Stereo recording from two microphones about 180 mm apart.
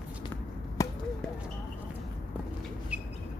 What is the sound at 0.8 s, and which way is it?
Basketball bounce, 20° left (ahead or behind).